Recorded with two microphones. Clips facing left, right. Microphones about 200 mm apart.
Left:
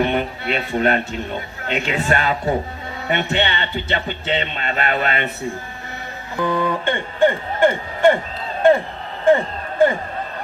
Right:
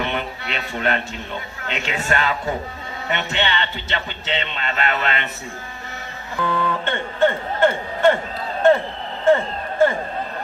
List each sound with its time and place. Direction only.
0.0 s speech: 45° left (ahead or behind)
2.0 s a man's voice: 40° left (ahead or behind)
6.4 s speech: 15° left (ahead or behind)
9.3 s a sound: 15° left (ahead or behind)